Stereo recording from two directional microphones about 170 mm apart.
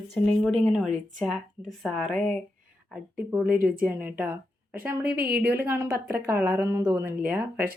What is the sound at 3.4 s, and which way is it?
Speech, 60° right (ahead or behind).